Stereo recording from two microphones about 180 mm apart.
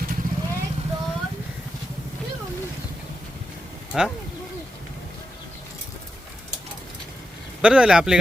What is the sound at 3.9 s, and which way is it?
Speech, centre (ahead or behind).